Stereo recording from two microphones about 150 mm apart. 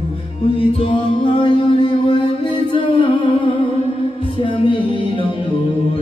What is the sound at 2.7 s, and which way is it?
Music, 35° left (ahead or behind).